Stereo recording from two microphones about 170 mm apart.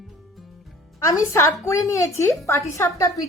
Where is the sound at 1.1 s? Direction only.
15° left (ahead or behind).